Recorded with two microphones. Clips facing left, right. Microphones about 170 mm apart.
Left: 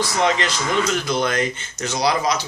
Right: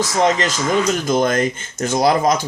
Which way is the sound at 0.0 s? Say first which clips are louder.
Right 3 dB; 40° right (ahead or behind).